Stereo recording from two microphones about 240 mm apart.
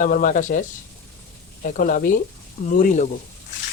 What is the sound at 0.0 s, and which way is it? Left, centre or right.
Speech, left.